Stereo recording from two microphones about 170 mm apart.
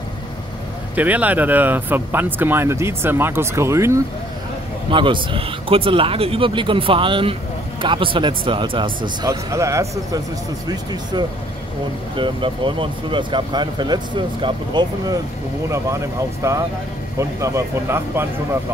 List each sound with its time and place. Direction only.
0.9 s speech: 10° right (ahead or behind)
4.9 s speech: 30° right (ahead or behind)
16.4 s speech: 20° right (ahead or behind)